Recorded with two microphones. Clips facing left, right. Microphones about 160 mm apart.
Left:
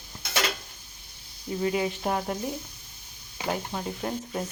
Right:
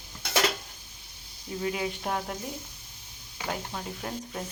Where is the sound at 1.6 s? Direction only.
Centre (ahead or behind).